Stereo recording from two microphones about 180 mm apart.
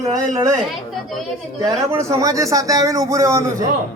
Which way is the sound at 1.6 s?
15° right (ahead or behind).